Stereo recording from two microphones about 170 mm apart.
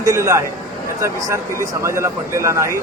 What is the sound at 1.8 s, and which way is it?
Speech, 15° right (ahead or behind).